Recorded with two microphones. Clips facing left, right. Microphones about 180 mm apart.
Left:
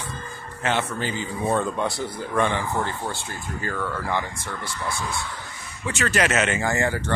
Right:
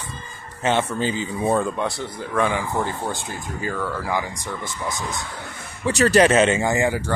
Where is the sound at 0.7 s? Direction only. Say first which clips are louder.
Right 4 dB; 20° right (ahead or behind).